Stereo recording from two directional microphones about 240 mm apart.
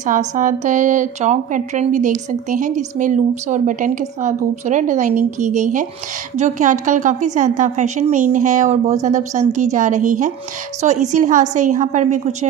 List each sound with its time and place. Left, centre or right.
0.0 s a woman's voice: right